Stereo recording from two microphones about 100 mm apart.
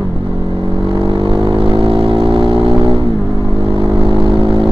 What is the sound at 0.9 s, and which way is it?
Vehicle, 55° right (ahead or behind).